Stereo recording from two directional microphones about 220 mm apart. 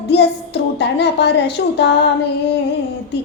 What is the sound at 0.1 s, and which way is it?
Speech, 50° left (ahead or behind).